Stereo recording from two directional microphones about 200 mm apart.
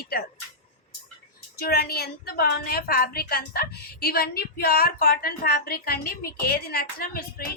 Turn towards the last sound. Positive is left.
turn(degrees=45)  # may be behind; listen again after turning